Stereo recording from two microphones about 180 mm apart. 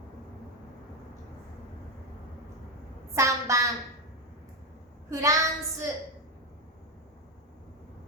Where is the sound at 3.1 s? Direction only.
15° right (ahead or behind).